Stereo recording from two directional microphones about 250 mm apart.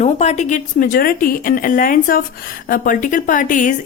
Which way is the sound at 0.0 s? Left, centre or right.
Left.